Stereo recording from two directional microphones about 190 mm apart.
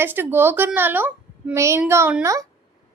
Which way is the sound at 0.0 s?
10° right (ahead or behind).